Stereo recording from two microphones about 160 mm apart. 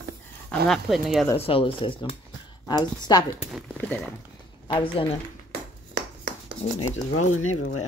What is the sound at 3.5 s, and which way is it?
Speech, centre (ahead or behind).